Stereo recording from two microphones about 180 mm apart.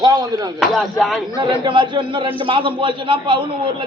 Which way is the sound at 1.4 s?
25° right (ahead or behind).